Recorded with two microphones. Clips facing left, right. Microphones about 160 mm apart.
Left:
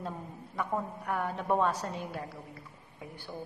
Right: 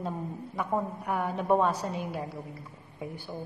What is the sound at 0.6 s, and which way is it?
A woman's voice, 15° right (ahead or behind).